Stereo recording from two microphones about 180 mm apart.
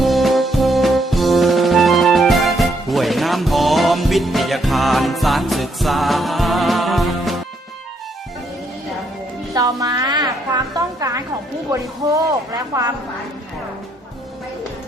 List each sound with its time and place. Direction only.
0.0 s music: centre (ahead or behind)
9.6 s a sound: 20° right (ahead or behind)
11.7 s speech: 20° right (ahead or behind)